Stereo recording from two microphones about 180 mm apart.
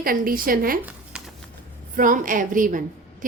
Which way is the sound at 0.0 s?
50° right (ahead or behind).